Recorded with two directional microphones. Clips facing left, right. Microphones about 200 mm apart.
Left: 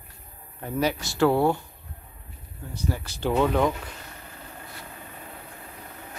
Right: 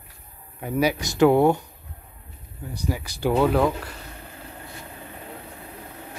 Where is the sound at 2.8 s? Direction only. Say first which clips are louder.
Right 3 dB; 10° right (ahead or behind).